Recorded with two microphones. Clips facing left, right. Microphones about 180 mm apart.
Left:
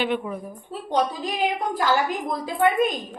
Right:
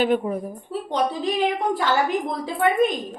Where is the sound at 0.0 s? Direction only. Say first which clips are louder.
Right 5 dB; 40° right (ahead or behind).